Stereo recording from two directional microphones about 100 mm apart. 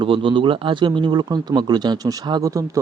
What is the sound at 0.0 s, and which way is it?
Speech, 60° right (ahead or behind).